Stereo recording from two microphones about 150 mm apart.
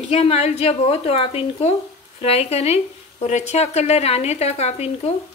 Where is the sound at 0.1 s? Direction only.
45° left (ahead or behind).